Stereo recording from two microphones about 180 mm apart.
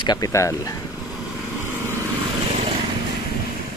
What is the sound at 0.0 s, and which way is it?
Speech, 20° left (ahead or behind).